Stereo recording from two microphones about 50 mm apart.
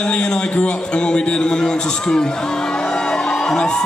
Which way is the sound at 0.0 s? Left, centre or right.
Centre.